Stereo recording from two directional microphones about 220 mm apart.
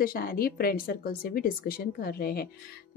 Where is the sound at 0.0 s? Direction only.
40° left (ahead or behind).